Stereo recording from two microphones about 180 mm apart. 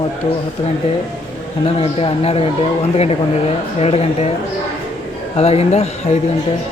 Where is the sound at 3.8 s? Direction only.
35° left (ahead or behind).